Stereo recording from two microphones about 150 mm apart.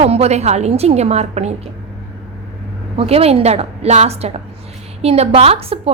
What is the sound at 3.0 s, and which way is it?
A woman's voice, 40° right (ahead or behind).